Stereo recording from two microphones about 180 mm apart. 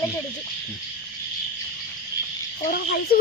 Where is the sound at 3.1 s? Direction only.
55° left (ahead or behind).